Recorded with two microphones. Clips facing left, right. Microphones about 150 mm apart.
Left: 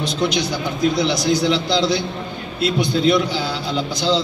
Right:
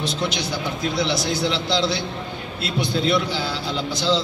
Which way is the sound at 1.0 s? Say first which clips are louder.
Left 5 dB; 15° left (ahead or behind).